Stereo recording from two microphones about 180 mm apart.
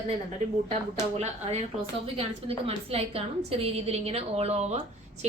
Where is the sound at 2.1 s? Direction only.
35° right (ahead or behind).